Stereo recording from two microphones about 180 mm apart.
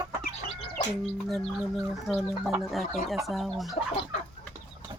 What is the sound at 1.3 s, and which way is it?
Speech, centre (ahead or behind).